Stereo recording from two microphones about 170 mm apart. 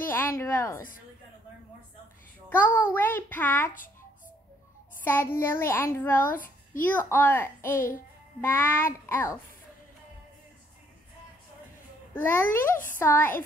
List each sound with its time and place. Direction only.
0.1 s a woman's voice: 15° left (ahead or behind)
2.5 s a child's voice: 15° left (ahead or behind)
5.0 s a child's voice: 15° left (ahead or behind)
12.1 s a child's voice: 10° left (ahead or behind)